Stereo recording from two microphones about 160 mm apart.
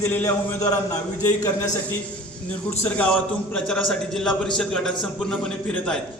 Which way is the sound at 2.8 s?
10° left (ahead or behind).